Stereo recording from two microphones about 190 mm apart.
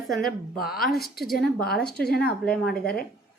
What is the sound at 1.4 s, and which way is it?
Speech, 55° left (ahead or behind).